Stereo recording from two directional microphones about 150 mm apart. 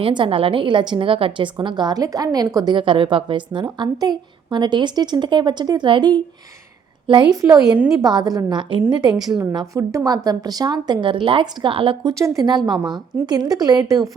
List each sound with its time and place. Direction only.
0.0 s a woman's voice: 35° right (ahead or behind)
7.8 s a woman's voice: 5° right (ahead or behind)
8.0 s a woman's voice: 25° right (ahead or behind)
12.2 s a woman's voice: 25° right (ahead or behind)